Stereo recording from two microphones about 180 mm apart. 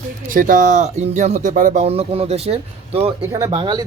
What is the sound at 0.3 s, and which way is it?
Speech, 50° right (ahead or behind).